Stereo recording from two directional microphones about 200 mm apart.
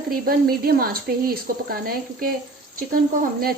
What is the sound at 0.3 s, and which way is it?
Speech, 50° right (ahead or behind).